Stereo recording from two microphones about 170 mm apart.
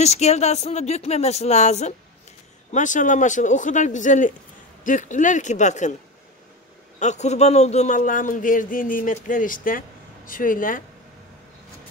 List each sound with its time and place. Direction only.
0.0 s a man's voice: 40° left (ahead or behind)
7.0 s a man's voice: 40° left (ahead or behind)